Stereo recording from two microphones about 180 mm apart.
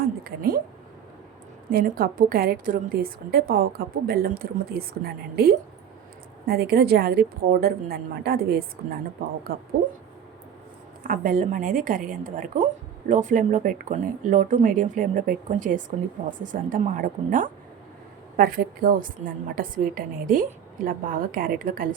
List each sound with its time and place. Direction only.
0.3 s a woman's voice: 55° right (ahead or behind)
1.7 s a woman's voice: 50° right (ahead or behind)
11.0 s a woman's voice: 50° right (ahead or behind)